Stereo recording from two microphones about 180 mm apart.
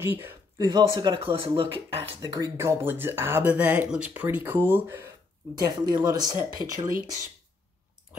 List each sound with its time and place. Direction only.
0.0 s speech: 15° right (ahead or behind)